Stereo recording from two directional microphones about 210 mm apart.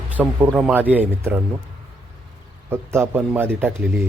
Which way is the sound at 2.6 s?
10° right (ahead or behind).